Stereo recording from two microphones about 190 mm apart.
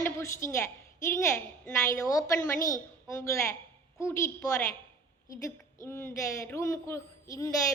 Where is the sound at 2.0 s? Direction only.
20° left (ahead or behind).